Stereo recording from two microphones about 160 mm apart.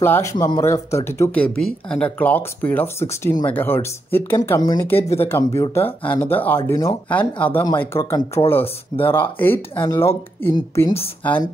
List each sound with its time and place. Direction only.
0.0 s speech: 15° left (ahead or behind)